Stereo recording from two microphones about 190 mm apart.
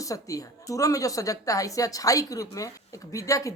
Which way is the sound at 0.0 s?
15° left (ahead or behind).